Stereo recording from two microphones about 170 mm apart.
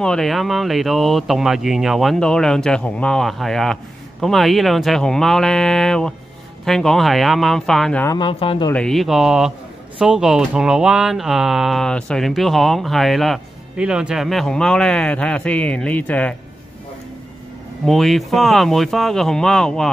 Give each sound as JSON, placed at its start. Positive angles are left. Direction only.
{"t": 0.0, "sound": "speech", "side_deg": 5}
{"t": 8.2, "sound": "speech", "side_deg": 30}
{"t": 8.7, "sound": "speech", "side_deg": 0}
{"t": 17.8, "sound": "speech", "side_deg": 0}